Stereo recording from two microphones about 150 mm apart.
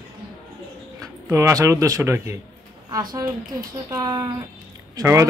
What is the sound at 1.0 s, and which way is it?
A man's voice, 20° right (ahead or behind).